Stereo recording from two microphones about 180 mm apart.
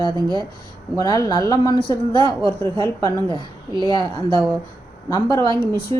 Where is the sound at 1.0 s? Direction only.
20° left (ahead or behind).